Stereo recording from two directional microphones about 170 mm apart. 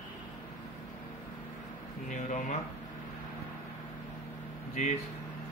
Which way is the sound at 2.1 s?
45° left (ahead or behind).